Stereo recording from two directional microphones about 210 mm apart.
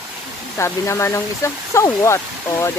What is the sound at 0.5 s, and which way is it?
Speech, 15° left (ahead or behind).